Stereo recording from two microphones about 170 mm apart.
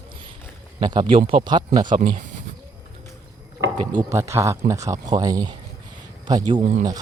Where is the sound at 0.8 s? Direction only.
25° right (ahead or behind).